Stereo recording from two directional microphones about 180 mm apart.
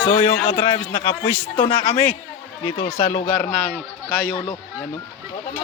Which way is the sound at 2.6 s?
30° left (ahead or behind).